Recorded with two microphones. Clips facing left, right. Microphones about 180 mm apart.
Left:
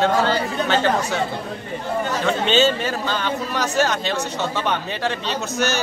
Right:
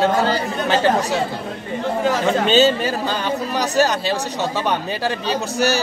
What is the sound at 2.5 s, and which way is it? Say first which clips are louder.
Speech: right 2 dB; 40° right (ahead or behind).